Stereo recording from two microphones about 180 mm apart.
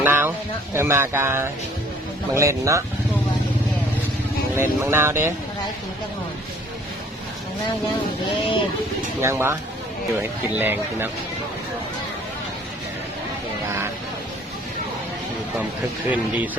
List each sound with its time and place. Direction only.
0.0 s speech: 10° right (ahead or behind)
4.5 s speech: 15° right (ahead or behind)
9.2 s speech: 15° right (ahead or behind)
10.6 s speech: 10° right (ahead or behind)
16.0 s speech: 10° right (ahead or behind)